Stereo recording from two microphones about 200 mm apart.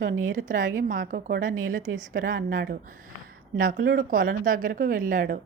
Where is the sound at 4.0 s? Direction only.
45° right (ahead or behind).